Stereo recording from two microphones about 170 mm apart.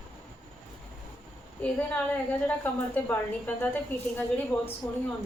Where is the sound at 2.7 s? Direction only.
10° left (ahead or behind).